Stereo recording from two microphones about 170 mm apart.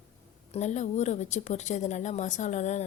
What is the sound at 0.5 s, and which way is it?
Speech, 45° left (ahead or behind).